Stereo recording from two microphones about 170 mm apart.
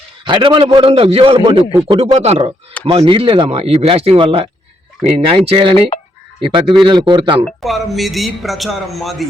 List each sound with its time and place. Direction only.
0.3 s a man's voice: 30° right (ahead or behind)
7.6 s a man's voice: centre (ahead or behind)